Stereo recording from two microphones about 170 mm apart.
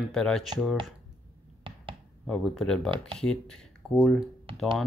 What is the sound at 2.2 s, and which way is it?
Speech, 5° left (ahead or behind).